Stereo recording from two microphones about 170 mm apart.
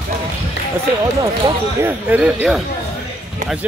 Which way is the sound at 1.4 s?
10° right (ahead or behind).